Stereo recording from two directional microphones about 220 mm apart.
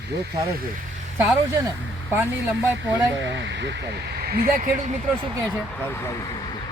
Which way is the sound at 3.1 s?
55° right (ahead or behind).